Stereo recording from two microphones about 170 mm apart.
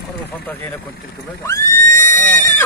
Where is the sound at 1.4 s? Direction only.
15° left (ahead or behind).